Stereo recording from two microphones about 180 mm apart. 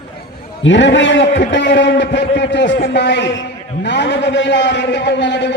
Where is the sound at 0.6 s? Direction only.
85° left.